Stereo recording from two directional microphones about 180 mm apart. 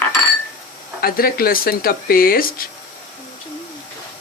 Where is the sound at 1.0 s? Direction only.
55° left (ahead or behind).